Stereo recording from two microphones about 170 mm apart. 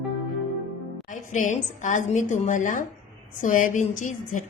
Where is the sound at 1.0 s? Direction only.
50° left (ahead or behind).